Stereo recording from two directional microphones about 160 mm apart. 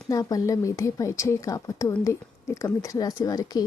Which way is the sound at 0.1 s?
20° left (ahead or behind).